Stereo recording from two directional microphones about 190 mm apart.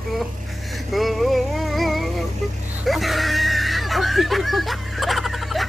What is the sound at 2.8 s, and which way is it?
Screaming, centre (ahead or behind).